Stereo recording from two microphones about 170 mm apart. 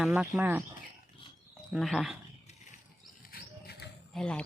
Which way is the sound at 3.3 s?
70° left (ahead or behind).